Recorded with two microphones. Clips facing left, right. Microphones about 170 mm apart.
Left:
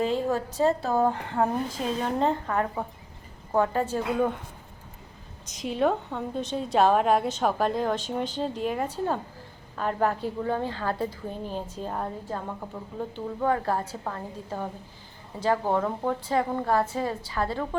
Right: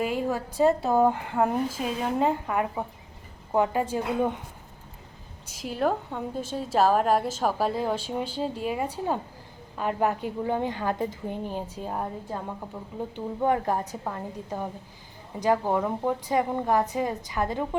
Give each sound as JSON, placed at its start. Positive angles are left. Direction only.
{"t": 0.0, "sound": "a woman's voice", "side_deg": -10}
{"t": 5.5, "sound": "a woman's voice", "side_deg": -5}